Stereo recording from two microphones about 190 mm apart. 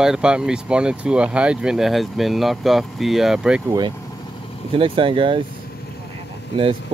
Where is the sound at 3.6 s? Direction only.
20° right (ahead or behind).